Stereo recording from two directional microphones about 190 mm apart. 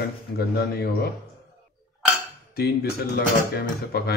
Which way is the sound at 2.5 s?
55° left (ahead or behind).